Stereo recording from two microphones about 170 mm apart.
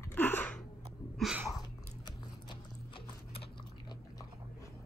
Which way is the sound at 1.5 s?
20° left (ahead or behind).